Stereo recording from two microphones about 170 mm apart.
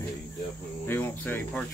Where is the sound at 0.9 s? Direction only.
10° left (ahead or behind).